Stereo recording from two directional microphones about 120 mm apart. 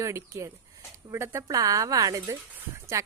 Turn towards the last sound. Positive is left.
turn(degrees=-25)  # may be behind; listen again after turning